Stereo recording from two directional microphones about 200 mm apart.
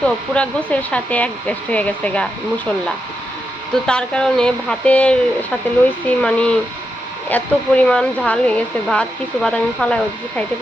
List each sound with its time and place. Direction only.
0.0 s speech: 5° left (ahead or behind)
3.8 s speech: 5° left (ahead or behind)